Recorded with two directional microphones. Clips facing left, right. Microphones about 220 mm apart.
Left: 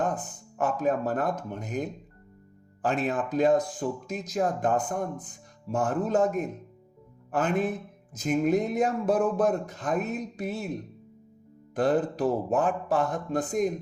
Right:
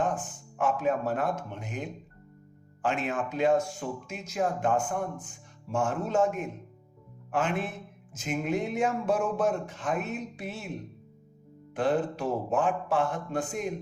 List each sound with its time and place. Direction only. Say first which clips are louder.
0.0 s speech: left 1 dB; 40° left (ahead or behind)
11.7 s speech: left 2 dB; 40° left (ahead or behind)